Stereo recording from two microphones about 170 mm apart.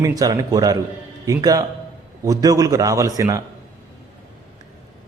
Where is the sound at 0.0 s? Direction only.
20° right (ahead or behind).